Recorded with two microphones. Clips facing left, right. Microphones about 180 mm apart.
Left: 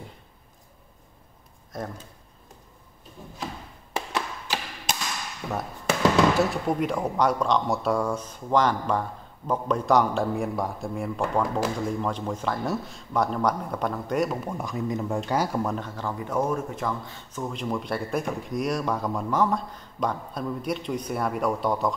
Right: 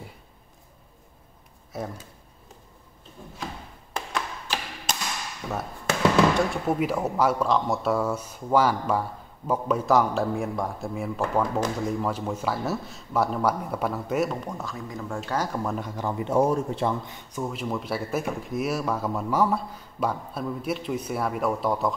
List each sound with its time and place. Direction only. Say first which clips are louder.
1.7 s speech: right 1 dB; 5° right (ahead or behind)
3.9 s tap: left 1 dB; 5° left (ahead or behind)
5.4 s speech: left 1 dB; 5° left (ahead or behind)
5.9 s music: even; 5° left (ahead or behind)
6.7 s speech: right 1 dB; 5° right (ahead or behind); by 15.6 s 10° left (ahead or behind)
15.6 s speech: left 1 dB; 5° right (ahead or behind)
16.0 s speech: right 6 dB; 20° right (ahead or behind)
17.0 s speech: right 1 dB; 15° right (ahead or behind)